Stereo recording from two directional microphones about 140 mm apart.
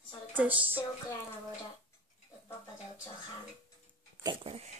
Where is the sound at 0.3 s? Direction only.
10° right (ahead or behind).